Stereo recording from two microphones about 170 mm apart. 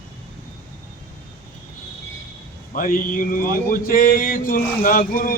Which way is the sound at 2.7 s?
55° left (ahead or behind).